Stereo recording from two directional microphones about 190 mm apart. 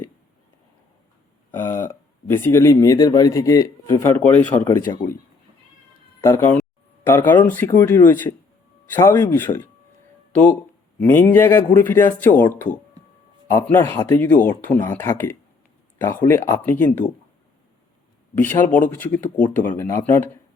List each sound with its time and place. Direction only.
1.5 s speech: 10° left (ahead or behind)
6.2 s speech: 10° left (ahead or behind)
11.0 s speech: 10° left (ahead or behind)
13.5 s speech: 10° left (ahead or behind)
18.3 s speech: 10° left (ahead or behind)